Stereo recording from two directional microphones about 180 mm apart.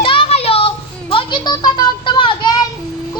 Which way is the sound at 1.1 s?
25° left (ahead or behind).